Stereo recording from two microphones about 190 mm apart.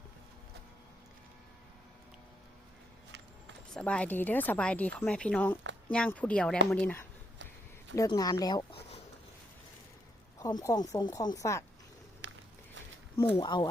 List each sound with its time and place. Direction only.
3.8 s speech: 5° left (ahead or behind)
7.9 s speech: 20° left (ahead or behind)
10.4 s speech: 15° left (ahead or behind)
12.2 s walk: 70° right (ahead or behind)
13.3 s speech: 25° left (ahead or behind)